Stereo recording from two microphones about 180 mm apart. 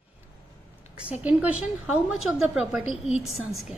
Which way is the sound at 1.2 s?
5° right (ahead or behind).